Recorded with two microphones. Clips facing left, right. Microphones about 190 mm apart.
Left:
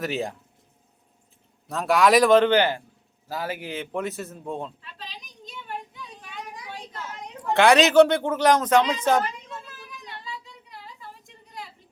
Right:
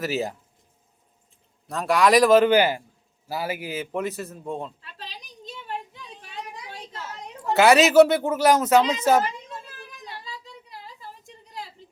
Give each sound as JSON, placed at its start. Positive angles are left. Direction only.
{"t": 0.0, "sound": "speech", "side_deg": -5}
{"t": 1.6, "sound": "speech", "side_deg": 0}
{"t": 5.5, "sound": "a sound", "side_deg": -35}
{"t": 7.5, "sound": "speech", "side_deg": -5}
{"t": 10.2, "sound": "child singing", "side_deg": -35}